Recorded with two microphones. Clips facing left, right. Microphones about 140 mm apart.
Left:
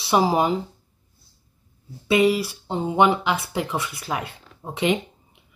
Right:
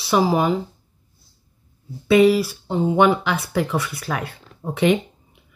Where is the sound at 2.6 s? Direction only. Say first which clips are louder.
Right 5 dB; 30° left (ahead or behind).